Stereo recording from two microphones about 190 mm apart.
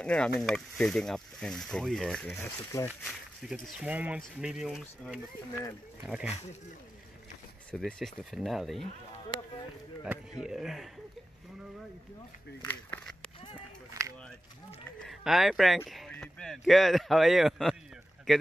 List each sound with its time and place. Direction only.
0.0 s speech: 5° left (ahead or behind)
2.7 s speech: 15° left (ahead or behind)
3.1 s speech: centre (ahead or behind)
7.7 s speech: centre (ahead or behind)
10.4 s speech: centre (ahead or behind)
12.6 s a sound: 5° left (ahead or behind)
15.0 s speech: centre (ahead or behind)